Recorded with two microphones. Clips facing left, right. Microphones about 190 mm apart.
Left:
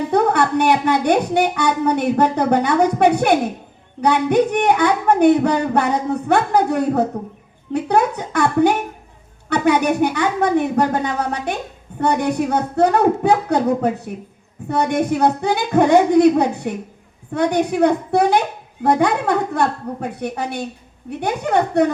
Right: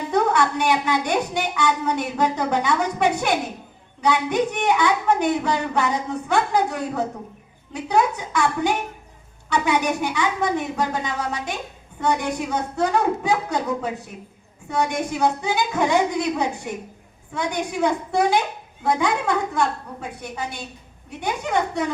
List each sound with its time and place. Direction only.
0.1 s a woman's voice: 60° left (ahead or behind)